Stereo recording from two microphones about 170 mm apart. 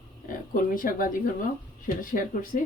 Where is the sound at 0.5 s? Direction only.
55° left (ahead or behind).